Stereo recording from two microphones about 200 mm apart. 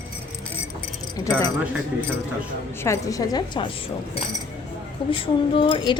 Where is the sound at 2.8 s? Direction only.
15° left (ahead or behind).